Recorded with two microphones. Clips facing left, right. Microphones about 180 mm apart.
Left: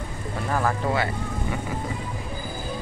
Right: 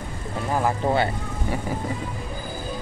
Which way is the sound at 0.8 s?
30° right (ahead or behind).